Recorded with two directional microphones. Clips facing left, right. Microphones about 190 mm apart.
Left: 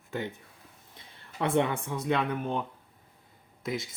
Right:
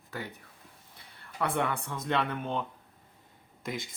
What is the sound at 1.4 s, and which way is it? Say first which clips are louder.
Speech: left 4 dB; 20° left (ahead or behind).